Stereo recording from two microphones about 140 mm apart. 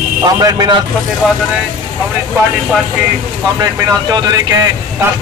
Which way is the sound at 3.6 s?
30° right (ahead or behind).